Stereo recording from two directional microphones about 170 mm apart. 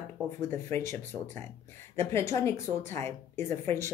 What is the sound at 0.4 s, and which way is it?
Speech, 15° left (ahead or behind).